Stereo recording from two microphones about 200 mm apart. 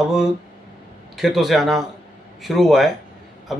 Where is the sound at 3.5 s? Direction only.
Centre (ahead or behind).